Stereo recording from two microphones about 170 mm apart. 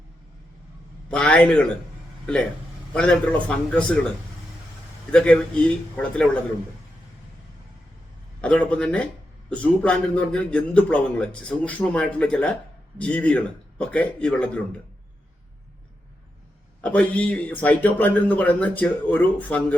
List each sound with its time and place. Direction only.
1.1 s speech: 5° left (ahead or behind)
2.9 s speech: 5° left (ahead or behind)
5.1 s speech: 5° left (ahead or behind)
8.4 s speech: 5° left (ahead or behind)
16.8 s speech: 10° left (ahead or behind)